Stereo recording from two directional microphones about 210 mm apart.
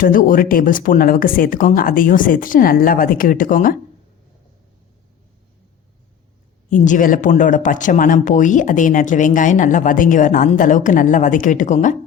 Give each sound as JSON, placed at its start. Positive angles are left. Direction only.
{"t": 0.0, "sound": "speech", "side_deg": 40}
{"t": 6.7, "sound": "speech", "side_deg": 35}